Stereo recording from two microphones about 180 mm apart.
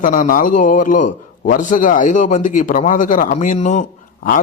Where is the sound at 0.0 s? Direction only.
45° left (ahead or behind).